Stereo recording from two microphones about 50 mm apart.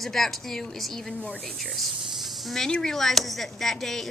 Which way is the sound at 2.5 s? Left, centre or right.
Centre.